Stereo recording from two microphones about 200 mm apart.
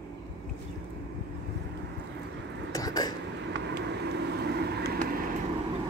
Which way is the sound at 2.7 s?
20° left (ahead or behind).